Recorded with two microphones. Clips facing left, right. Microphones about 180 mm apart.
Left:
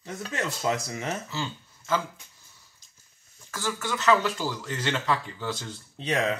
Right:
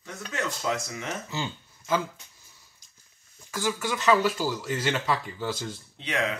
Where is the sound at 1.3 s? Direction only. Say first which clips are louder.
Even; 15° right (ahead or behind).